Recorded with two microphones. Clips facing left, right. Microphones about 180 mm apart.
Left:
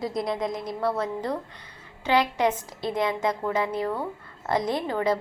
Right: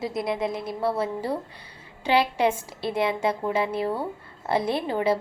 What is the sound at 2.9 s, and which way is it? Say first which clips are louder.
Speech: right 1 dB; 30° right (ahead or behind).